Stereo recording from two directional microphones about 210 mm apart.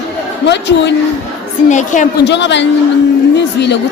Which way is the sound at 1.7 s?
35° left (ahead or behind).